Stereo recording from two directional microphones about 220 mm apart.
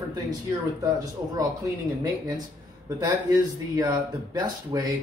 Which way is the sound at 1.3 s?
15° right (ahead or behind).